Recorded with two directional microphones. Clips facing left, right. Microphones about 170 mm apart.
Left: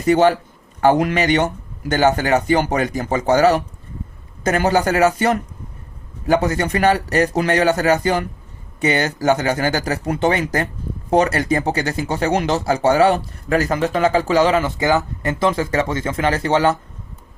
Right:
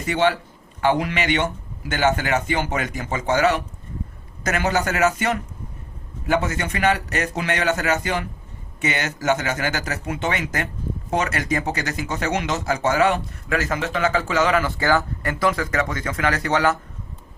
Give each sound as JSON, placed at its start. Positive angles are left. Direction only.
{"t": 0.0, "sound": "speech", "side_deg": 40}